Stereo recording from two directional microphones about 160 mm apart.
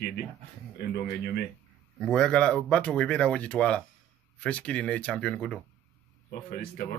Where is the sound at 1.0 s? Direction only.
80° left.